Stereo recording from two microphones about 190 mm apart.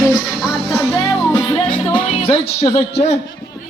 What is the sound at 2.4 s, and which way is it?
Speech, 35° left (ahead or behind).